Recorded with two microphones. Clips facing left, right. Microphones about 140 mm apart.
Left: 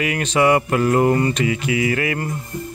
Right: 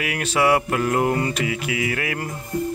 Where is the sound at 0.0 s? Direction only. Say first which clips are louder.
Left 3 dB; 5° right (ahead or behind).